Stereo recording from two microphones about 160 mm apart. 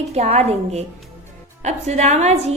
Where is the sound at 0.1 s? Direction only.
40° right (ahead or behind).